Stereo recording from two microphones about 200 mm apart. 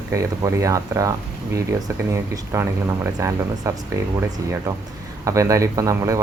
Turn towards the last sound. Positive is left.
turn(degrees=-15)  # may be behind; listen again after turning